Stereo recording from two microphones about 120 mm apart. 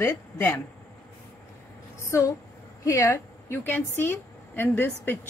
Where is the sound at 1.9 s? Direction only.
25° left (ahead or behind).